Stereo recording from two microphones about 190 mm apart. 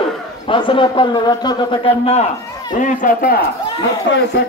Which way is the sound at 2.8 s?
45° left (ahead or behind).